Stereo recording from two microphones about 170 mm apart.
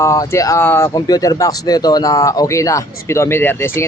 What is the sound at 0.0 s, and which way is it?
Speech, 15° left (ahead or behind).